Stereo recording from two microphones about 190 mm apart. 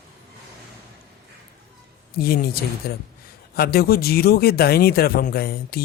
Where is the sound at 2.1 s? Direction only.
55° left (ahead or behind).